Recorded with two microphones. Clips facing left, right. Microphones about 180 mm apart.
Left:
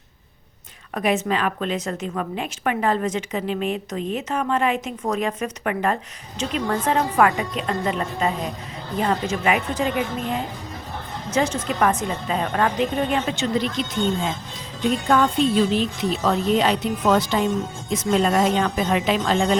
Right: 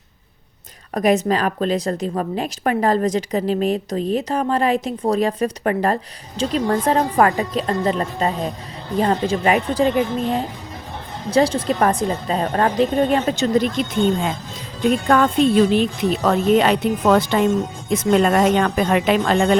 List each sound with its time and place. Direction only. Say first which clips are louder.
0.9 s a woman's voice: right 5 dB; 40° right (ahead or behind); by 19.5 s 60° right (ahead or behind)